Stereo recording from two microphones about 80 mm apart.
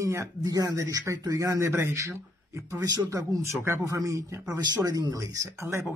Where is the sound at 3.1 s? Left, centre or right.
Right.